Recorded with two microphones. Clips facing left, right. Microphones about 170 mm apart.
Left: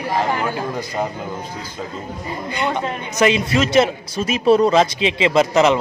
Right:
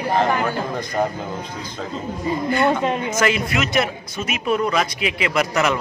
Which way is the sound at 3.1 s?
20° left (ahead or behind).